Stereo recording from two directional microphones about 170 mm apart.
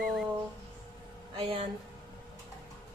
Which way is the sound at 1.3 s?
30° right (ahead or behind).